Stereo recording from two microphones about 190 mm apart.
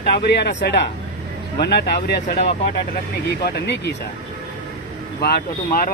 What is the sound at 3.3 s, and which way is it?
Speech, 60° left (ahead or behind).